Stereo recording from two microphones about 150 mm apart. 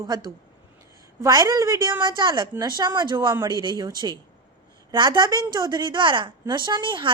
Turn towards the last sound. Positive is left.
turn(degrees=-35)  # may be behind; listen again after turning